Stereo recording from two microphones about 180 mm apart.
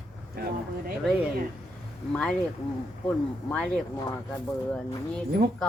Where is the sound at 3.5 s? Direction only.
5° left (ahead or behind).